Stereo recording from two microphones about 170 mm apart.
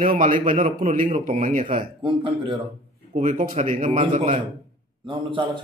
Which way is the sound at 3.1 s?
50° right (ahead or behind).